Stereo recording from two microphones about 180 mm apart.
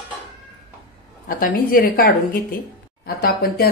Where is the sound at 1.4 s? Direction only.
50° left (ahead or behind).